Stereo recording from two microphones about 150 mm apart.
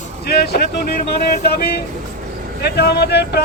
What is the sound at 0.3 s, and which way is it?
Speech, 90° left.